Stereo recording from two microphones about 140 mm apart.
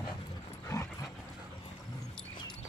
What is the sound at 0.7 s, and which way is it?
Dog, 20° left (ahead or behind).